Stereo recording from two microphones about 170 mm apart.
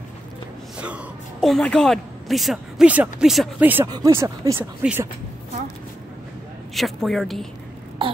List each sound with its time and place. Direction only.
0.7 s a woman's voice: 5° right (ahead or behind)
3.8 s speech: 20° right (ahead or behind)
6.7 s a man's voice: centre (ahead or behind)